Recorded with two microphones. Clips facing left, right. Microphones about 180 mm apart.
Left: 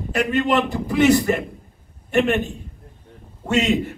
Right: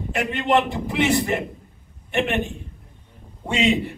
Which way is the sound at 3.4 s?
45° left (ahead or behind).